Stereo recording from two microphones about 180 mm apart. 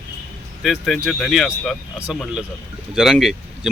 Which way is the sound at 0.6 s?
Centre (ahead or behind).